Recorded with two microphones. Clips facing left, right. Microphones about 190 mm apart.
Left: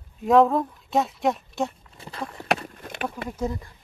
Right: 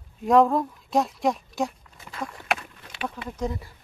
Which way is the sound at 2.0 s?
30° left (ahead or behind).